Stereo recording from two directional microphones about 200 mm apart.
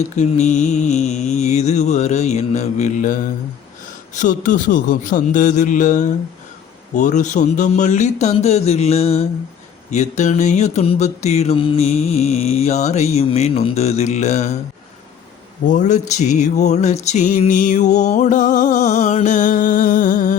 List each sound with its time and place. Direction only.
0.2 s mantra: 35° left (ahead or behind)
15.6 s mantra: 40° left (ahead or behind)